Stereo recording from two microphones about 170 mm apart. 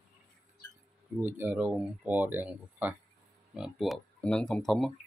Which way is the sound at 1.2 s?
10° right (ahead or behind).